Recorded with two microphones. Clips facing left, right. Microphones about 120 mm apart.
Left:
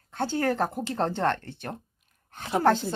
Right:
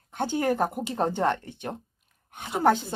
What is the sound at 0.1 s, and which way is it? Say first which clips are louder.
Speech: right 1 dB; 15° right (ahead or behind).